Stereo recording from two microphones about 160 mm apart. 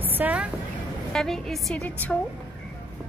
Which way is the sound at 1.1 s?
Centre (ahead or behind).